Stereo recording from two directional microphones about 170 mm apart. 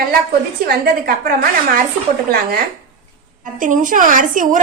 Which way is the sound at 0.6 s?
60° right (ahead or behind).